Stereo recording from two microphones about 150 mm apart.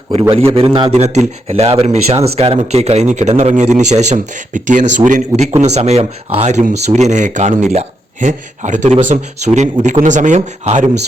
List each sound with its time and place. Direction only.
0.1 s a man's voice: 40° right (ahead or behind)
0.9 s speech: 50° right (ahead or behind)